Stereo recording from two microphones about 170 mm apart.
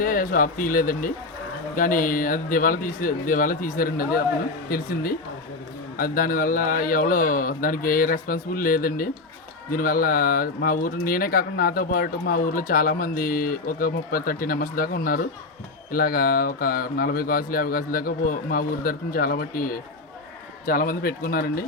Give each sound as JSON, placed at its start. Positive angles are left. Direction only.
{"t": 0.0, "sound": "speech", "side_deg": 55}